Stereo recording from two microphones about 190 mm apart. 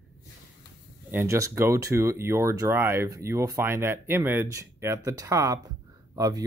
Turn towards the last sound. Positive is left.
turn(degrees=-15)  # may be behind; listen again after turning